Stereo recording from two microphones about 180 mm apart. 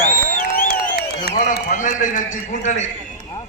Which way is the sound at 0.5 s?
55° left (ahead or behind).